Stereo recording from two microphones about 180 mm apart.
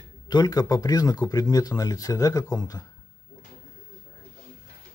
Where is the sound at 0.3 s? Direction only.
20° left (ahead or behind).